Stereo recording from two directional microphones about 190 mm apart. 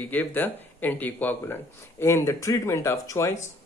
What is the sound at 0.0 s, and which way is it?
Speech, 10° left (ahead or behind).